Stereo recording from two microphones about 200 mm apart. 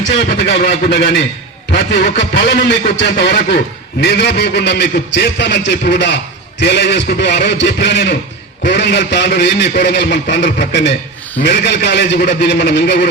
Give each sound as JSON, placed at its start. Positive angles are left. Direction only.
{"t": 0.2, "sound": "a man's voice", "side_deg": 55}